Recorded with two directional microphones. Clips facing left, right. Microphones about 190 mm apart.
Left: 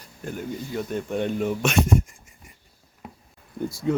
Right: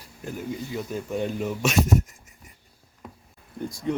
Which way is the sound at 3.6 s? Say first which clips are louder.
Left 3 dB; 5° left (ahead or behind).